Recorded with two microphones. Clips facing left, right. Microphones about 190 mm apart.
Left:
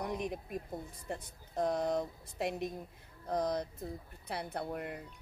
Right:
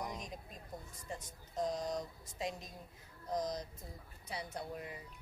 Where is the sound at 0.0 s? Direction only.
60° left (ahead or behind).